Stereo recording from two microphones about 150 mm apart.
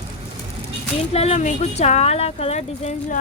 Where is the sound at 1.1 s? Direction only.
45° left (ahead or behind).